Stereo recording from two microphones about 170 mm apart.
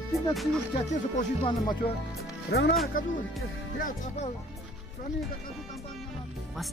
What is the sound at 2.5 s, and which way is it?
Speech, 90° left.